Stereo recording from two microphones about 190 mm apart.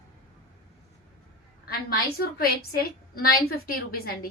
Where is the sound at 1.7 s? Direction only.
50° left (ahead or behind).